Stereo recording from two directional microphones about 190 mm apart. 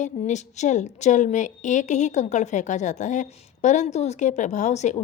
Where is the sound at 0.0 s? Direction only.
40° left (ahead or behind).